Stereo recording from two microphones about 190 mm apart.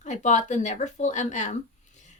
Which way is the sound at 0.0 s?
40° left (ahead or behind).